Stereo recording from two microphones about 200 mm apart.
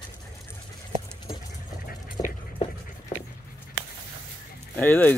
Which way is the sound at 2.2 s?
20° left (ahead or behind).